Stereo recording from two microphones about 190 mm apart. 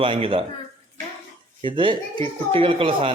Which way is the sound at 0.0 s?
30° right (ahead or behind).